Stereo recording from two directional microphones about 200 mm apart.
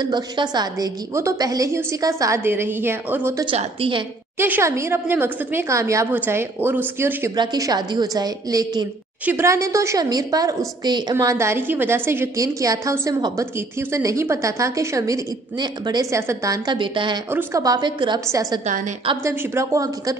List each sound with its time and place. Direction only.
0.0 s a woman's voice: 20° right (ahead or behind)
3.4 s a woman's voice: 25° right (ahead or behind)
4.4 s a woman's voice: 10° right (ahead or behind)
17.3 s a woman's voice: 10° right (ahead or behind)